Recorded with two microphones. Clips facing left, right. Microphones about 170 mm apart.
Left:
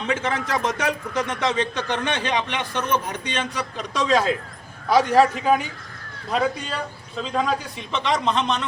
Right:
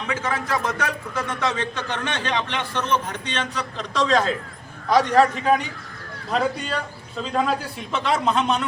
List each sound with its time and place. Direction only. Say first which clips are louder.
0.1 s a man's voice: left 1 dB; 25° left (ahead or behind); by 5.6 s 5° left (ahead or behind)
7.2 s a man's voice: right 1 dB; centre (ahead or behind)